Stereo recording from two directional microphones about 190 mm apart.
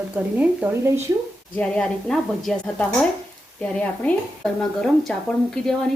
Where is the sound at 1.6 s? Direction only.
5° left (ahead or behind).